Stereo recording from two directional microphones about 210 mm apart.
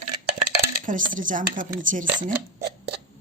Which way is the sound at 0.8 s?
40° right (ahead or behind).